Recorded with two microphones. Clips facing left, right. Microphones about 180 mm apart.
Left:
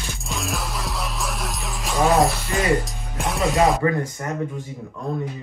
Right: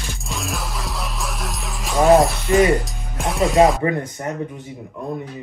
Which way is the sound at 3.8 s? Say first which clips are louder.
Even; 20° right (ahead or behind).